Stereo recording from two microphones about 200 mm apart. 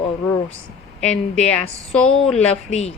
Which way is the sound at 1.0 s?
5° left (ahead or behind).